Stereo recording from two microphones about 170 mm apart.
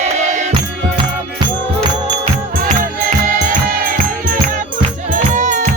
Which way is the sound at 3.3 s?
55° right (ahead or behind).